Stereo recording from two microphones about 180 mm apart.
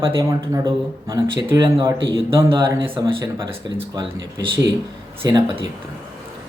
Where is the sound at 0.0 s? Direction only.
20° right (ahead or behind).